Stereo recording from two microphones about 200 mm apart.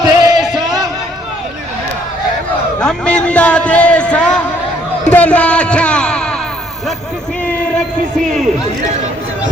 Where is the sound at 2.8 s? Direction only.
5° left (ahead or behind).